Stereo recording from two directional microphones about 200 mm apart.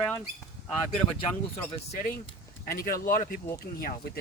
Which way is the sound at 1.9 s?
45° left (ahead or behind).